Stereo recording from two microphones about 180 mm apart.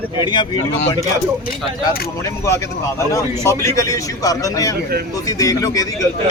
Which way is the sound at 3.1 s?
15° left (ahead or behind).